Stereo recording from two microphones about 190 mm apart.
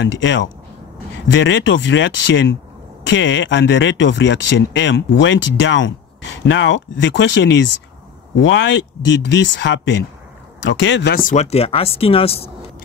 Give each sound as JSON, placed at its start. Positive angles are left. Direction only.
{"t": 0.0, "sound": "speech", "side_deg": 70}